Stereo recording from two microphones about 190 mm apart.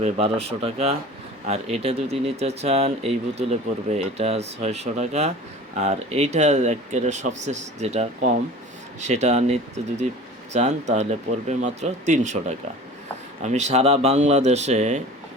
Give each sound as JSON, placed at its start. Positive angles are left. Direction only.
{"t": 0.0, "sound": "speech", "side_deg": -30}